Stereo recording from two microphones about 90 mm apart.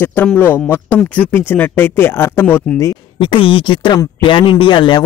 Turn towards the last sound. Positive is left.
turn(degrees=60)  # may be behind; listen again after turning